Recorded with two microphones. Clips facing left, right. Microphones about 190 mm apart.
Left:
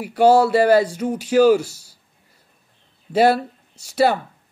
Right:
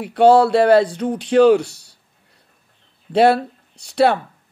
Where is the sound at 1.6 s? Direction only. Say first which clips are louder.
Right 2 dB; 65° right (ahead or behind).